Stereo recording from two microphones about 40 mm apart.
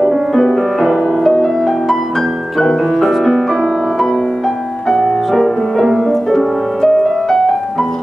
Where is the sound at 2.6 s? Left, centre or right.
Centre.